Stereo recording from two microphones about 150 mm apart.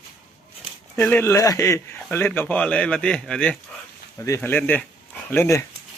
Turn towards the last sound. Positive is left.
turn(degrees=15)  # may be behind; listen again after turning